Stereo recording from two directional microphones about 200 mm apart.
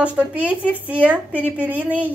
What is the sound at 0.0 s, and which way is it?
A woman's voice, 5° right (ahead or behind).